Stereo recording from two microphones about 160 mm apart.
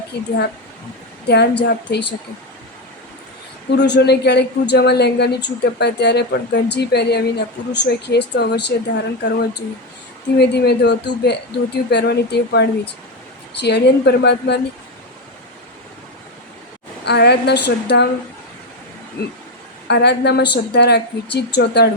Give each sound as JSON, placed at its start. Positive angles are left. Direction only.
{"t": 0.1, "sound": "a woman's voice", "side_deg": 90}
{"t": 3.8, "sound": "a woman's voice", "side_deg": 90}
{"t": 17.1, "sound": "a woman's voice", "side_deg": 90}
{"t": 19.9, "sound": "a woman's voice", "side_deg": 90}